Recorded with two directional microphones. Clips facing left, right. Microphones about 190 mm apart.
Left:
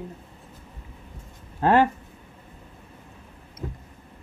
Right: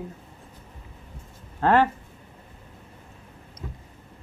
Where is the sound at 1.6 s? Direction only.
15° left (ahead or behind).